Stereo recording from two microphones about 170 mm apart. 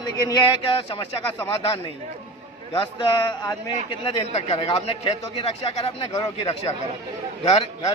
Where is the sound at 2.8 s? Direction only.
25° left (ahead or behind).